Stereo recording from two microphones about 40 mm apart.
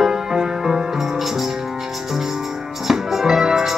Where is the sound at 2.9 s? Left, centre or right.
Centre.